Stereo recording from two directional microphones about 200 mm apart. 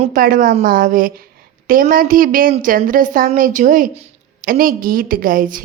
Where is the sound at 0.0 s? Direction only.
45° right (ahead or behind).